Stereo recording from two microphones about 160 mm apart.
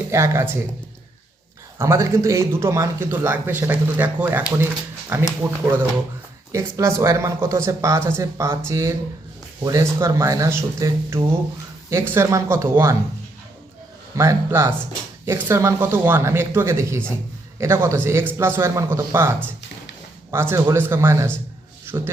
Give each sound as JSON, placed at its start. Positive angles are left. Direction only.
{"t": 0.1, "sound": "a man's voice", "side_deg": -15}
{"t": 1.8, "sound": "a man's voice", "side_deg": -15}
{"t": 14.2, "sound": "a man's voice", "side_deg": -15}